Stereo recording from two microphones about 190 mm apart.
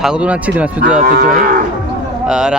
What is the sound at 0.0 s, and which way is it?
Speech, 5° right (ahead or behind).